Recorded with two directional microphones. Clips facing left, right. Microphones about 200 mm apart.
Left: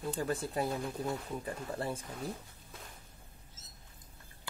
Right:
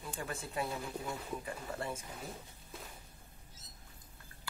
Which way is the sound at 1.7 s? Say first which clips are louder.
Left 4 dB; 35° left (ahead or behind).